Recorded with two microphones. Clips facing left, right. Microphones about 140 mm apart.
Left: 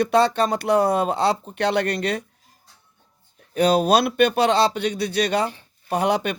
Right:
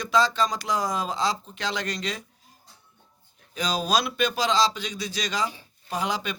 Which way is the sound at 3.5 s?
60° left (ahead or behind).